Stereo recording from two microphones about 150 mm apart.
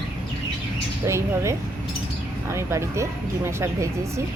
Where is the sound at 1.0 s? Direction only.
20° right (ahead or behind).